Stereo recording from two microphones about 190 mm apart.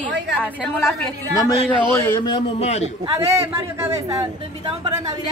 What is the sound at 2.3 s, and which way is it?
Speech, 35° left (ahead or behind).